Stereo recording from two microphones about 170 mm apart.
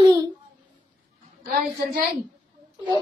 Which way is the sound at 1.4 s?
60° right (ahead or behind).